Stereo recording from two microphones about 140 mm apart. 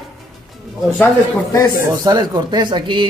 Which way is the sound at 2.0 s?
30° right (ahead or behind).